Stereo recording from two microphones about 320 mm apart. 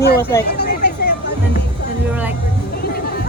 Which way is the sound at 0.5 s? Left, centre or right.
Left.